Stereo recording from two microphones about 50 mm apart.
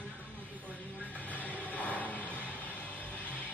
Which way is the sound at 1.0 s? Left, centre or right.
Left.